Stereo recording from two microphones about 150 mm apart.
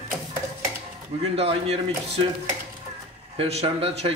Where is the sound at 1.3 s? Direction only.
40° right (ahead or behind).